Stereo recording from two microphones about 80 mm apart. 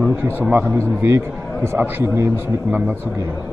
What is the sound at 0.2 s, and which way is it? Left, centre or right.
A man's voice, right.